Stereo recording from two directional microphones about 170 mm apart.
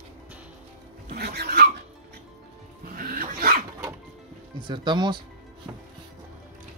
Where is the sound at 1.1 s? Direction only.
70° right (ahead or behind).